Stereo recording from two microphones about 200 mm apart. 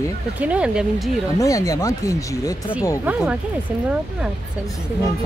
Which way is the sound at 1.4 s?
15° left (ahead or behind).